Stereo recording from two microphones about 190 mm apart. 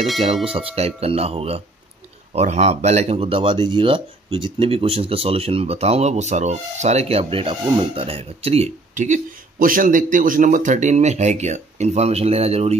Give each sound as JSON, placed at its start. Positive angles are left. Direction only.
{"t": 0.5, "sound": "speech", "side_deg": -30}